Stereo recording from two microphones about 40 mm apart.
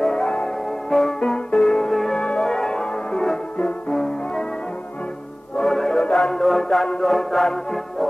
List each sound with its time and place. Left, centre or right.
0.0 s music: centre
0.9 s music: centre
5.6 s music: centre
6.4 s music: centre